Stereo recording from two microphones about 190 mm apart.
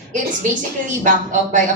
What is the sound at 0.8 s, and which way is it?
Speech, 40° right (ahead or behind).